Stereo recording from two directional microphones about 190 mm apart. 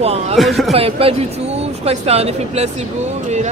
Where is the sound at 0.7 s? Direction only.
30° right (ahead or behind).